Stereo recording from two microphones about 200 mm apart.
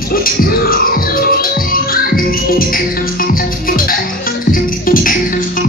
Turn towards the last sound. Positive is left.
turn(degrees=45)  # may be behind; listen again after turning